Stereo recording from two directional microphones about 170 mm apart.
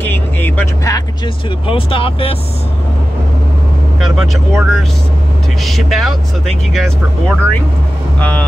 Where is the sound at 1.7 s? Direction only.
30° left (ahead or behind).